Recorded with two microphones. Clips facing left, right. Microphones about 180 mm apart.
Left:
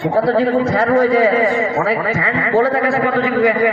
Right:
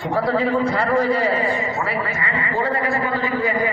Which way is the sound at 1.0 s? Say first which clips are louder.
Left 7 dB; 90° left.